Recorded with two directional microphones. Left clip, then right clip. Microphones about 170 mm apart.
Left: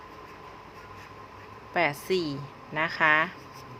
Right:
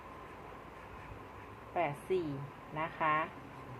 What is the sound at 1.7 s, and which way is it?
Speech, 55° left (ahead or behind).